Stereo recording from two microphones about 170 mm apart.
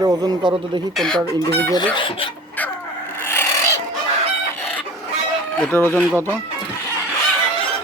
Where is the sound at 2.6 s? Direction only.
10° left (ahead or behind).